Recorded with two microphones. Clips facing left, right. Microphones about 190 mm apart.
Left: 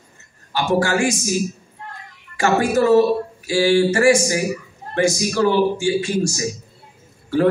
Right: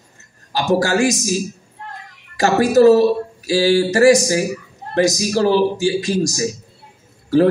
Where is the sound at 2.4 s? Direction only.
40° right (ahead or behind).